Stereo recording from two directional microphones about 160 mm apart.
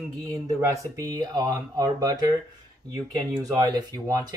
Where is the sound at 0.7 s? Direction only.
20° right (ahead or behind).